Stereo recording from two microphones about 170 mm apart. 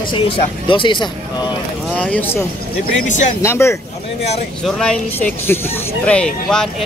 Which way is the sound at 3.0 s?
45° left (ahead or behind).